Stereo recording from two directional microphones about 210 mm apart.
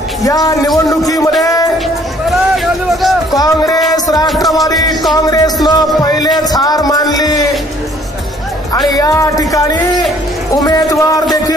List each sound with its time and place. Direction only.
0.2 s a man's voice: 15° left (ahead or behind)
1.4 s music: 15° left (ahead or behind)
2.5 s a sound: centre (ahead or behind)
3.3 s music: 15° left (ahead or behind)
4.3 s music: centre (ahead or behind)
5.1 s music: 20° left (ahead or behind)
8.7 s speech: 20° left (ahead or behind)
10.5 s music: 15° left (ahead or behind)